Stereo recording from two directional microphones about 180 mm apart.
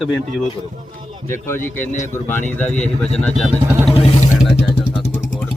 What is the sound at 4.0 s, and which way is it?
Speech, 35° left (ahead or behind).